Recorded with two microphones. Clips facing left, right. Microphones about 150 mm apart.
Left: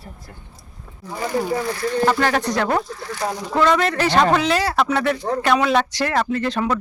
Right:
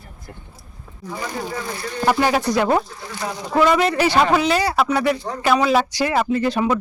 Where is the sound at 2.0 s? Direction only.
10° right (ahead or behind).